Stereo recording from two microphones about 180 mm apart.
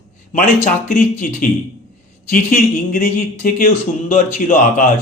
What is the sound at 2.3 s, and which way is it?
Speech, 50° left (ahead or behind).